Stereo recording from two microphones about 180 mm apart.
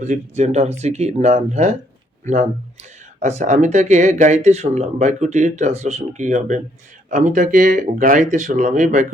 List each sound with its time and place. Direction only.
0.0 s speech: 40° right (ahead or behind)